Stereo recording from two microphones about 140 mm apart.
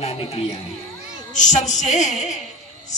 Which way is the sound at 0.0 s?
45° left (ahead or behind).